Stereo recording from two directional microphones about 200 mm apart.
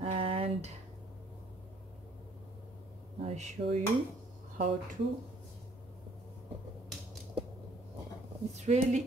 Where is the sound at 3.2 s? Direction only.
35° right (ahead or behind).